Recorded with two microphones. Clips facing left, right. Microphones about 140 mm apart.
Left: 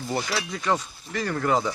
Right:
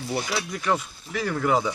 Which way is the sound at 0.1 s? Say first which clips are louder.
Even; 5° right (ahead or behind).